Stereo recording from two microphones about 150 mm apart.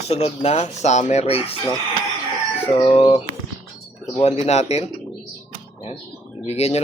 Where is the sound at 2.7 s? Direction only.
40° left (ahead or behind).